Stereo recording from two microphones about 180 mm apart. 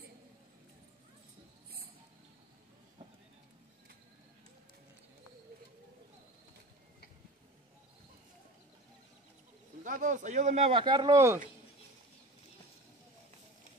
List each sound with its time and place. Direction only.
9.8 s speech: 45° right (ahead or behind); by 11.3 s 20° right (ahead or behind)